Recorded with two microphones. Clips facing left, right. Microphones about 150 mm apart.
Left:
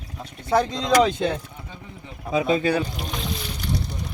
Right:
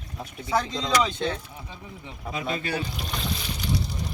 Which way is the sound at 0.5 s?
50° left (ahead or behind).